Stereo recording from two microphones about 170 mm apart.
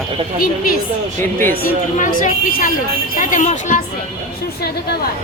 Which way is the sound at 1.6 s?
55° left (ahead or behind).